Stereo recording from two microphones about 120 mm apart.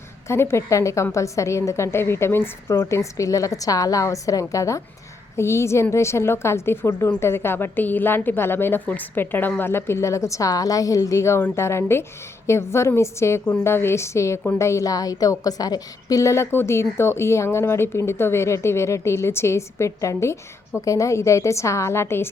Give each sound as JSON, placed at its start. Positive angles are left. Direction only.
{"t": 0.3, "sound": "a woman's voice", "side_deg": 20}